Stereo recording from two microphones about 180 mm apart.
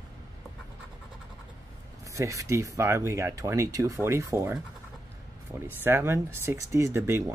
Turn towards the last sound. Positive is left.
turn(degrees=-15)  # may be behind; listen again after turning